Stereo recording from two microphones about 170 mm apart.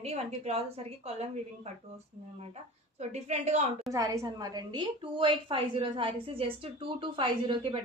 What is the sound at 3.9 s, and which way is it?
A woman's voice, 20° right (ahead or behind).